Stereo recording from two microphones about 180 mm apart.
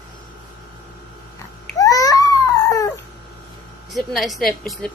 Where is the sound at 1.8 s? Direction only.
20° left (ahead or behind).